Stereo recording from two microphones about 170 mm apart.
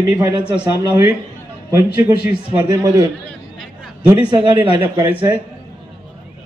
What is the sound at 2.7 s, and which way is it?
Speech, 20° right (ahead or behind).